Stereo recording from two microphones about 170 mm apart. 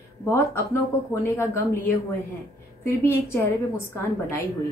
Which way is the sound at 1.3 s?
15° left (ahead or behind).